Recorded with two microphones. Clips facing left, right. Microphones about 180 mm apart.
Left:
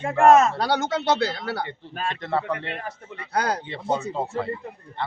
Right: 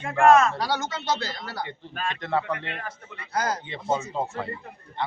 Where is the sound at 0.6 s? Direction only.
65° left (ahead or behind).